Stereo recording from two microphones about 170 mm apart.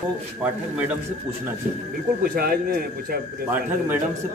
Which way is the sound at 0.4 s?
10° right (ahead or behind).